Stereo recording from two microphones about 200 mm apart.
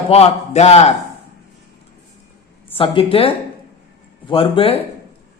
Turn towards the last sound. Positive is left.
turn(degrees=30)  # may be behind; listen again after turning